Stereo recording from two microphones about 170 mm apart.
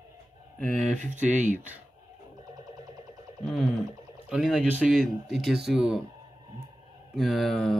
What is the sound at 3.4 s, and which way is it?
Speech, centre (ahead or behind).